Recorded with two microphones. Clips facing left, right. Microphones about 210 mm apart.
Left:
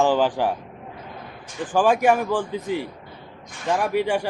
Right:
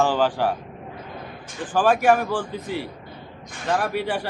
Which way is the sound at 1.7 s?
15° left (ahead or behind).